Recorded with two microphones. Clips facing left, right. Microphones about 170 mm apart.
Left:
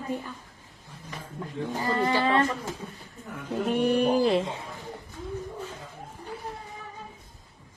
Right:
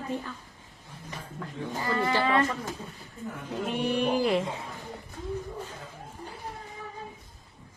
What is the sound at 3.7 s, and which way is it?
Music, 45° left (ahead or behind).